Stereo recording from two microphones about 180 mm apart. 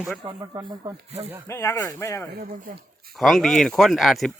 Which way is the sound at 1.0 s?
35° right (ahead or behind).